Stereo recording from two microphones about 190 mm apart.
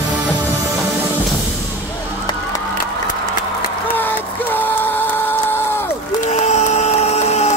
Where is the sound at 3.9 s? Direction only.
10° left (ahead or behind).